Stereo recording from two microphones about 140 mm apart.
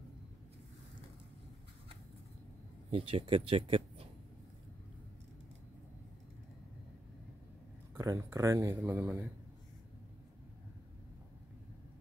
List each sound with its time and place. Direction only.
2.9 s speech: 40° right (ahead or behind)
7.9 s speech: 20° right (ahead or behind)